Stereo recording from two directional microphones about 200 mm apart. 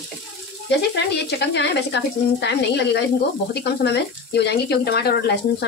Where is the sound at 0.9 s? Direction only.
55° left (ahead or behind).